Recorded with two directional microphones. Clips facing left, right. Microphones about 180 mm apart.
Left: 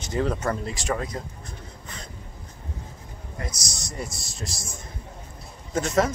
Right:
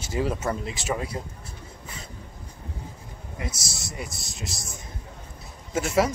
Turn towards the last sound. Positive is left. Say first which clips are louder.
# even
turn(degrees=-5)  # may be behind; listen again after turning